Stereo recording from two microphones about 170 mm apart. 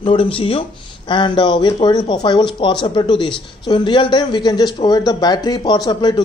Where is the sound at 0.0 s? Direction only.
30° left (ahead or behind).